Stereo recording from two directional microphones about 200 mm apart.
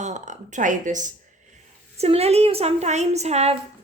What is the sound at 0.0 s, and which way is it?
Speech, 35° right (ahead or behind).